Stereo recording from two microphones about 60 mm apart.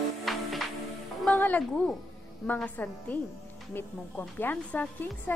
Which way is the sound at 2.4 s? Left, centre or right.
Centre.